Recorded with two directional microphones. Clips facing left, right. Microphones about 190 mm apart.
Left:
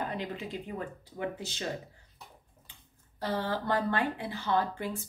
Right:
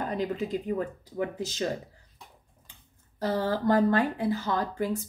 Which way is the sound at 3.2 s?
40° right (ahead or behind).